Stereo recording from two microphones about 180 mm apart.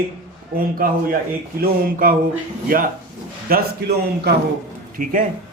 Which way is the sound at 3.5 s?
60° right (ahead or behind).